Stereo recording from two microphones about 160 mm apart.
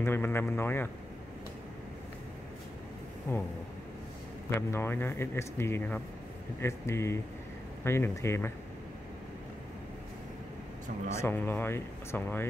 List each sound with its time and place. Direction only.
0.0 s speech: 15° left (ahead or behind)
3.3 s speech: 15° left (ahead or behind)
4.6 s speech: 15° left (ahead or behind)
11.1 s speech: 15° left (ahead or behind)